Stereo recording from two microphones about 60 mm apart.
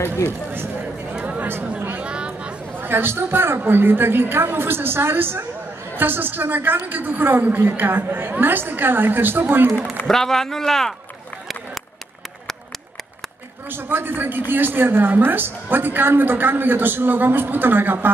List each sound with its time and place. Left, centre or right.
1.4 s a sound: right
1.8 s chatter: right
2.0 s chatter: centre
2.7 s a woman's voice: right
10.0 s speech: centre
13.7 s a woman's voice: right